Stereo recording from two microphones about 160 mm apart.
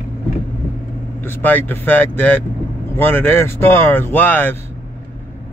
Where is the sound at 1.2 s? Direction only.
10° left (ahead or behind).